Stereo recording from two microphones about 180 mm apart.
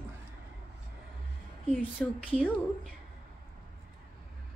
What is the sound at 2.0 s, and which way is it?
Speech, 5° left (ahead or behind).